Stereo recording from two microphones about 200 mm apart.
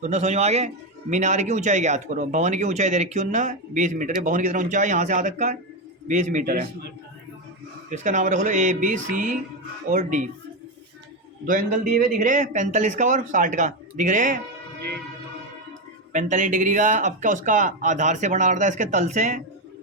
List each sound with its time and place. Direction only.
0.0 s a man's voice: 35° right (ahead or behind)
7.9 s speech: 40° right (ahead or behind)
11.4 s a man's voice: 45° right (ahead or behind)
16.1 s speech: 40° right (ahead or behind)